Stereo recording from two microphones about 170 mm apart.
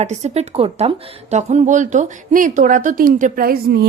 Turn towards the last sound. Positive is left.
turn(degrees=-65)  # may be behind; listen again after turning